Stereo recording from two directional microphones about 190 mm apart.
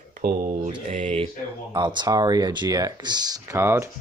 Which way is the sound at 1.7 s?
25° right (ahead or behind).